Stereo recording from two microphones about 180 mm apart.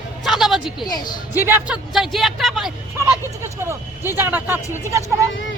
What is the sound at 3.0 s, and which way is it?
Speech, 15° right (ahead or behind).